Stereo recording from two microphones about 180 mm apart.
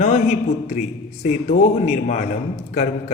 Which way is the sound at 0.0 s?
40° left (ahead or behind).